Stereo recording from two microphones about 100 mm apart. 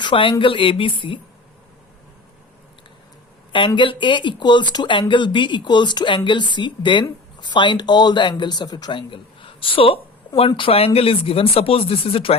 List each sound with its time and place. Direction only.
0.0 s a woman's voice: 55° left (ahead or behind)
3.5 s speech: 55° left (ahead or behind); by 12.3 s 70° left (ahead or behind)